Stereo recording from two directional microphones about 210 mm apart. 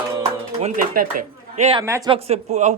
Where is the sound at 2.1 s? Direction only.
30° right (ahead or behind).